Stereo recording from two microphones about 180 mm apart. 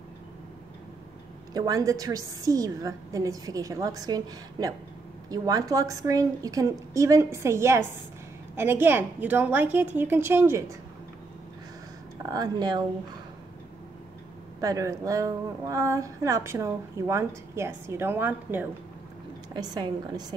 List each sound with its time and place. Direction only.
1.5 s a woman's voice: 20° right (ahead or behind)
12.3 s a woman's voice: 20° right (ahead or behind)
14.6 s a woman's voice: 20° right (ahead or behind)
19.5 s a woman's voice: 25° right (ahead or behind)